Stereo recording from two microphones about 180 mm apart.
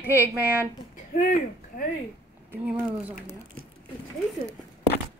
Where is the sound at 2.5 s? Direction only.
10° right (ahead or behind).